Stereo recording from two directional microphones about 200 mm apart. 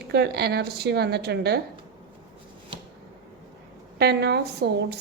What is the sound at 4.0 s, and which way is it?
Speech, 55° right (ahead or behind).